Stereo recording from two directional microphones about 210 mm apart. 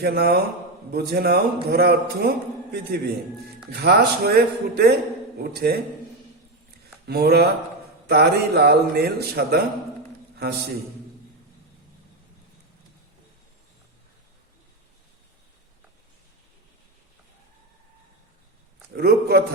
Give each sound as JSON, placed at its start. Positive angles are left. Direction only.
{"t": 0.0, "sound": "a man's voice", "side_deg": -50}
{"t": 7.1, "sound": "a man's voice", "side_deg": -50}
{"t": 18.9, "sound": "a man's voice", "side_deg": -50}